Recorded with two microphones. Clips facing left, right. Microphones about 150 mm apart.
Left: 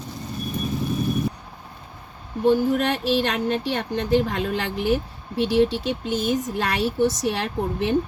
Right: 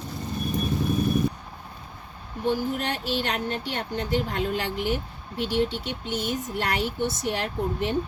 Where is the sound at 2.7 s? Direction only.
90° left.